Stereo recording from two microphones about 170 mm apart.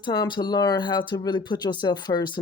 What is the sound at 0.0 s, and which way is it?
Speech, 25° left (ahead or behind).